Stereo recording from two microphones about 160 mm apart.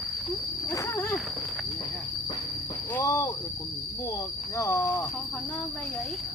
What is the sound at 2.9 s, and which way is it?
Cricket, 20° left (ahead or behind).